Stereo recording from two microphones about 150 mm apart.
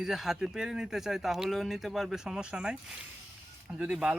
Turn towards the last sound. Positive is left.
turn(degrees=-5)  # may be behind; listen again after turning